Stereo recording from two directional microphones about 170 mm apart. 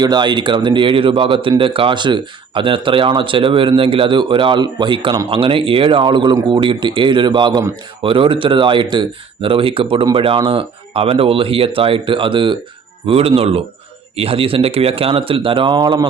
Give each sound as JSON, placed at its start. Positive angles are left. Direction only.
{"t": 0.0, "sound": "speech", "side_deg": -25}